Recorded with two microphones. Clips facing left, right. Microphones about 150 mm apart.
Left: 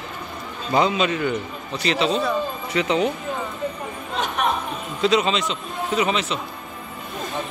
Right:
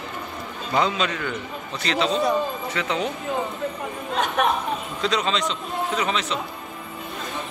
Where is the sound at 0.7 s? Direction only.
10° left (ahead or behind).